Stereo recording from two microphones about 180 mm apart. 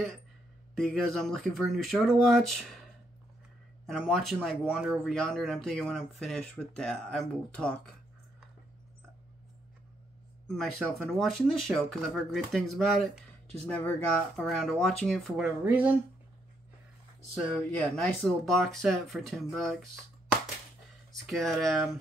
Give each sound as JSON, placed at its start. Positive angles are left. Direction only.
{"t": 0.7, "sound": "speech", "side_deg": 0}
{"t": 3.8, "sound": "speech", "side_deg": 0}
{"t": 10.5, "sound": "speech", "side_deg": 0}
{"t": 18.2, "sound": "speech", "side_deg": 0}
{"t": 21.1, "sound": "speech", "side_deg": 0}